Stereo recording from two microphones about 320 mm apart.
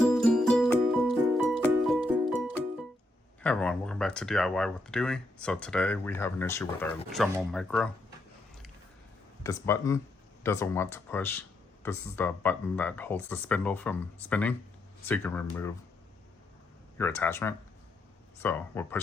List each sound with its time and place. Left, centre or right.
0.0 s music: centre
3.4 s speech: centre
9.4 s speech: centre
17.0 s speech: centre